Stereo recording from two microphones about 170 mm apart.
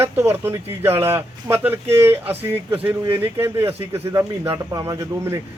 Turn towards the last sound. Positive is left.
turn(degrees=-20)  # may be behind; listen again after turning